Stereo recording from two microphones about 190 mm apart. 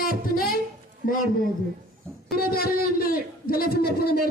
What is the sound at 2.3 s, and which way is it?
Speech, 50° left (ahead or behind).